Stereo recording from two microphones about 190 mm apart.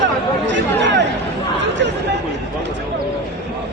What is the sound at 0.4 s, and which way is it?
Chatter, 70° right (ahead or behind).